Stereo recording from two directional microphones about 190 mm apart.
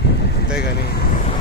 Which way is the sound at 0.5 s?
55° left (ahead or behind).